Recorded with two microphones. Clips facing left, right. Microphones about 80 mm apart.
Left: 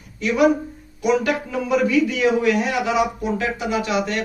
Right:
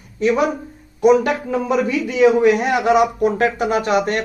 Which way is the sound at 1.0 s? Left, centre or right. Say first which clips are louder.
Right 6 dB; right.